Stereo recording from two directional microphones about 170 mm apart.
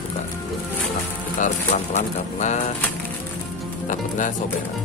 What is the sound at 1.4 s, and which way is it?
Speech, 45° left (ahead or behind).